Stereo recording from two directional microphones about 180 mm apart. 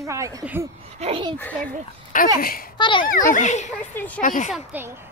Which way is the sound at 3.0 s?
45° left (ahead or behind).